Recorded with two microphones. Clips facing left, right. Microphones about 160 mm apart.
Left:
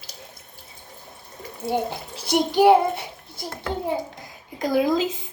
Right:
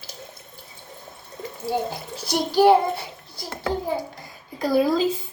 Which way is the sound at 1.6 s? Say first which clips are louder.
Left 1 dB; 25° left (ahead or behind).